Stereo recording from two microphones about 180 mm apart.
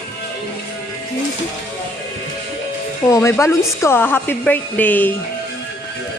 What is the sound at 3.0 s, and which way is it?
A woman's voice, 15° left (ahead or behind).